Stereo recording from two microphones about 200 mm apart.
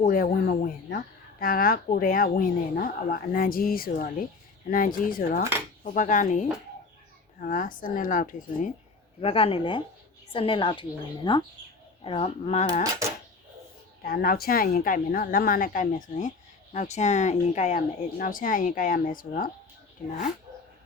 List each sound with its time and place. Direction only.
0.0 s speech: 45° left (ahead or behind)
7.4 s speech: 40° left (ahead or behind)
9.2 s a woman's voice: 30° left (ahead or behind)
14.0 s speech: 50° left (ahead or behind)